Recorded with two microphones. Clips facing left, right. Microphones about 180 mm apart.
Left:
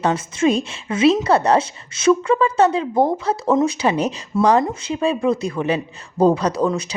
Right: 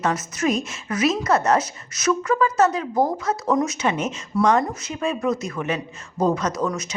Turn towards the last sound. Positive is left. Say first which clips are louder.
# left 5 dB
turn(degrees=30)  # may be behind; listen again after turning